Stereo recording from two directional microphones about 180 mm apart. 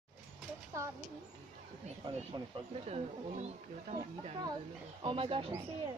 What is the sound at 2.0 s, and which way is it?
Speech, 30° right (ahead or behind).